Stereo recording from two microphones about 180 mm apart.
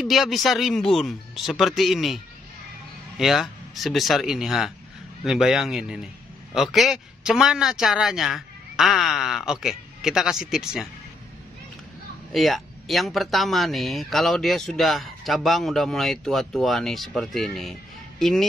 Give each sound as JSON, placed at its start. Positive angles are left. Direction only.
{"t": 0.0, "sound": "speech", "side_deg": 0}
{"t": 3.2, "sound": "speech", "side_deg": 0}
{"t": 12.3, "sound": "speech", "side_deg": 0}